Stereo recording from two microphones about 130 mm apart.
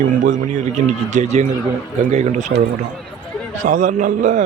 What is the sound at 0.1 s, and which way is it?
A man's voice, 65° right (ahead or behind).